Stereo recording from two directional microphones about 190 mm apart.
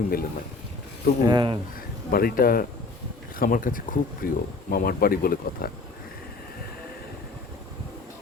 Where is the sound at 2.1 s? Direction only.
50° left (ahead or behind).